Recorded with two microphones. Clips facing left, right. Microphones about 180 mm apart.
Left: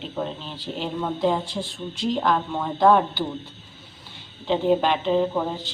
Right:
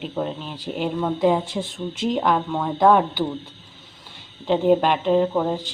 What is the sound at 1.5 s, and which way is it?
Speech, 20° right (ahead or behind).